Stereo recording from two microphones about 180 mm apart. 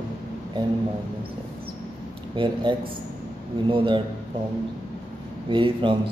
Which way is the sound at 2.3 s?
25° right (ahead or behind).